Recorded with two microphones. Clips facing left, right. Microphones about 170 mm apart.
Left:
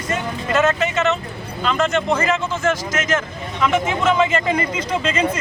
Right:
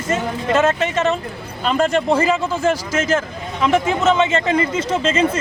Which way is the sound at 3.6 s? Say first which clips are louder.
Right 2 dB; 25° right (ahead or behind).